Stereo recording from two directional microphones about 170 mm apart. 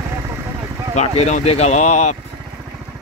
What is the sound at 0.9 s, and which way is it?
Speech, 40° left (ahead or behind).